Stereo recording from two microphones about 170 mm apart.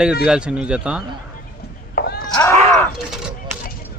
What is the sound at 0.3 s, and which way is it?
Speech, 5° right (ahead or behind).